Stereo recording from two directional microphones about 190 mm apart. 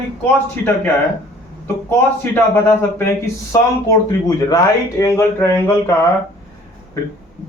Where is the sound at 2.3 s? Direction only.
10° left (ahead or behind).